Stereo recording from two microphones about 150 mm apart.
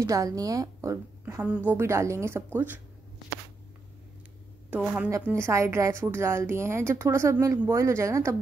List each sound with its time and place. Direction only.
0.0 s a woman's voice: 20° right (ahead or behind)
4.6 s a woman's voice: 10° right (ahead or behind)